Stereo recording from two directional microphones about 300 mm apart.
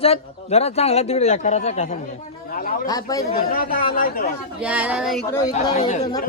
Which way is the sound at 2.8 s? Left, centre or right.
Centre.